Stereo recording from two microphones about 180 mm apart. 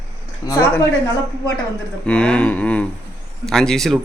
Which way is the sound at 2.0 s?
5° left (ahead or behind).